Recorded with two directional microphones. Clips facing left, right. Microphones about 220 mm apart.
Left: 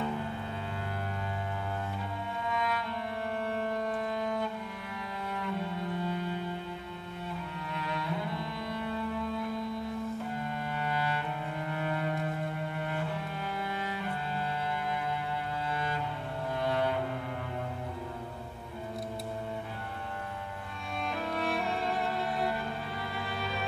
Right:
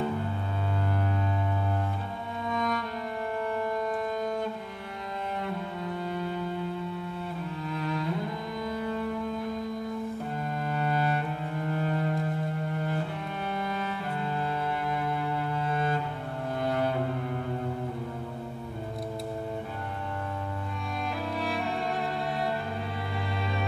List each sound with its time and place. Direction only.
2.4 s music: 45° right (ahead or behind)
10.7 s cello: 40° right (ahead or behind)
11.7 s music: 35° right (ahead or behind)
15.7 s cello: 50° right (ahead or behind)